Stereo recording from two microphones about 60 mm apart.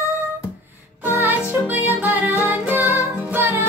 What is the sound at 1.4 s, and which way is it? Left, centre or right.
Music, right.